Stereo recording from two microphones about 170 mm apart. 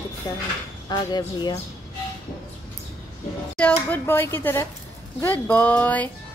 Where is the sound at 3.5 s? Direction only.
10° left (ahead or behind).